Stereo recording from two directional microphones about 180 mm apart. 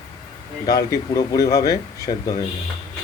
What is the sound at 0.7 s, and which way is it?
Speech, 20° left (ahead or behind).